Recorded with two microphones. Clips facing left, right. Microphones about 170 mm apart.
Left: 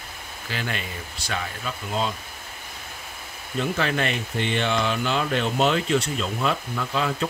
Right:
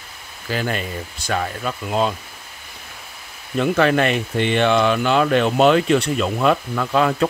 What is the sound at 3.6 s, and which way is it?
Speech, 60° right (ahead or behind).